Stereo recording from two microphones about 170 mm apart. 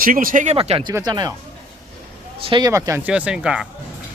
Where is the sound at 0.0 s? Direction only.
55° right (ahead or behind).